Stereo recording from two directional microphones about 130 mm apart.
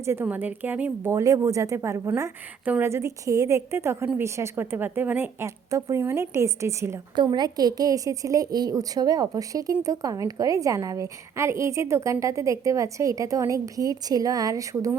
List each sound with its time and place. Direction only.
0.0 s a woman's voice: 20° right (ahead or behind)
7.2 s a woman's voice: 35° right (ahead or behind)